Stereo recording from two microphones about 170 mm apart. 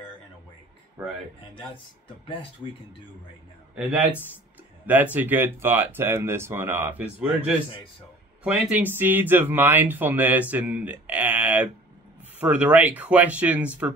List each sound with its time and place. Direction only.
1.0 s speech: 10° right (ahead or behind)
4.8 s speech: 10° right (ahead or behind)